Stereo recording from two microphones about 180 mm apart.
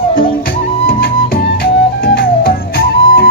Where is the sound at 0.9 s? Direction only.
55° left (ahead or behind).